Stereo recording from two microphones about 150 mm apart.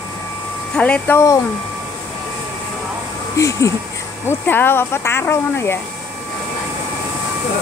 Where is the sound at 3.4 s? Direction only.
20° left (ahead or behind).